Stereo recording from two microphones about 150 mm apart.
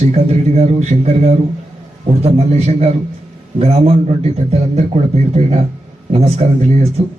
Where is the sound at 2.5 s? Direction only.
45° right (ahead or behind).